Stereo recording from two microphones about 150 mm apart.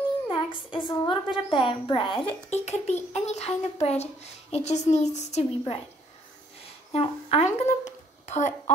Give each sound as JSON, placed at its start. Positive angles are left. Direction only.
{"t": 0.7, "sound": "a woman's voice", "side_deg": 30}
{"t": 6.9, "sound": "speech", "side_deg": 40}